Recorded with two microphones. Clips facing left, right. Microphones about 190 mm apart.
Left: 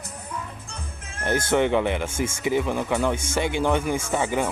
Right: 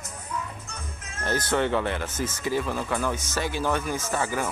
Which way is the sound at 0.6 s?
30° left (ahead or behind).